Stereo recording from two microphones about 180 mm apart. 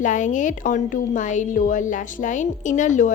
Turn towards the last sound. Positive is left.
turn(degrees=45)  # may be behind; listen again after turning